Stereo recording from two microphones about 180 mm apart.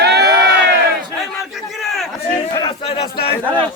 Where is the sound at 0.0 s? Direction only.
65° right (ahead or behind).